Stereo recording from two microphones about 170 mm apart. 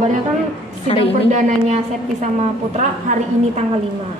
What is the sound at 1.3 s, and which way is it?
A woman's voice, 45° right (ahead or behind).